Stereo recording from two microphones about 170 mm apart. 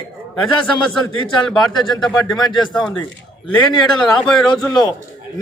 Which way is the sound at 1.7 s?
25° left (ahead or behind).